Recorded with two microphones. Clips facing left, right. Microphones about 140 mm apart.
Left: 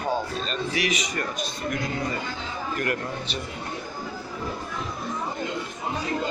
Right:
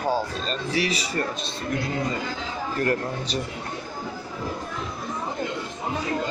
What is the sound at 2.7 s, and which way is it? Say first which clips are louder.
Speech: right 4 dB; 35° right (ahead or behind).